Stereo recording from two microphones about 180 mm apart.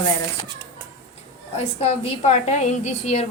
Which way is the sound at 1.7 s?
35° left (ahead or behind).